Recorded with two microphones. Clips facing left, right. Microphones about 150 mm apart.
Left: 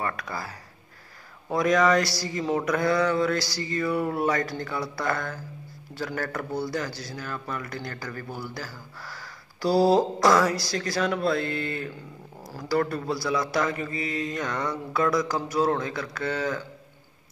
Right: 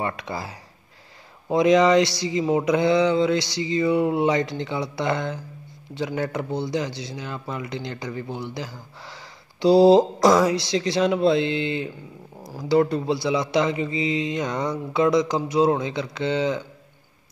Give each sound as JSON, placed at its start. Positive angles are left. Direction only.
{"t": 0.0, "sound": "speech", "side_deg": -25}